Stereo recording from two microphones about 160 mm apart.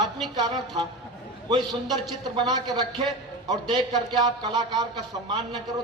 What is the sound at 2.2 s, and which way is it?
A man's voice, 25° right (ahead or behind).